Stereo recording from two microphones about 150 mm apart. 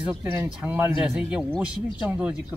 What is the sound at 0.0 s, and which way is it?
A man's voice, 20° right (ahead or behind).